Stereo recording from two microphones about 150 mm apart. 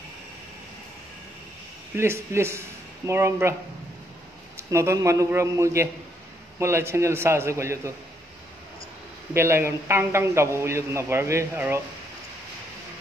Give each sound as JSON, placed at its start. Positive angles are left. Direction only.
{"t": 2.0, "sound": "a man's voice", "side_deg": -15}
{"t": 4.6, "sound": "a man's voice", "side_deg": -20}
{"t": 9.3, "sound": "a man's voice", "side_deg": -15}